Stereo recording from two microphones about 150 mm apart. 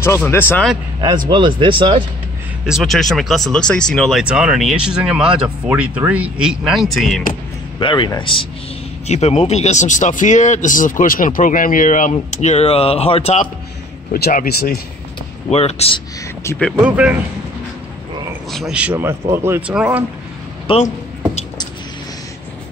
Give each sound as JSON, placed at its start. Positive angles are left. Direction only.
{"t": 0.0, "sound": "a man's voice", "side_deg": 15}
{"t": 1.0, "sound": "speech", "side_deg": -30}
{"t": 2.6, "sound": "speech", "side_deg": 0}
{"t": 7.8, "sound": "speech", "side_deg": 30}
{"t": 9.0, "sound": "a man's voice", "side_deg": 50}
{"t": 14.1, "sound": "speech", "side_deg": 85}
{"t": 15.5, "sound": "a man's voice", "side_deg": 40}
{"t": 16.5, "sound": "speech", "side_deg": 5}
{"t": 16.8, "sound": "speech", "side_deg": -10}
{"t": 18.5, "sound": "speech", "side_deg": -5}